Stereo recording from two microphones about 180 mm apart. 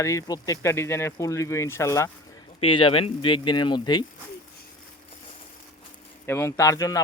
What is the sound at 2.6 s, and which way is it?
Speech, 30° left (ahead or behind).